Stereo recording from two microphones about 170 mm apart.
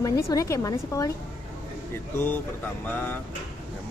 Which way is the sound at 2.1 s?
10° left (ahead or behind).